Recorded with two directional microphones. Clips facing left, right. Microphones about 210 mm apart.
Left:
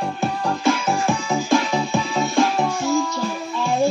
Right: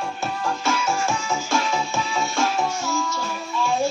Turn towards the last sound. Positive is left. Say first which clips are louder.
# left 3 dB
turn(degrees=15)  # may be behind; listen again after turning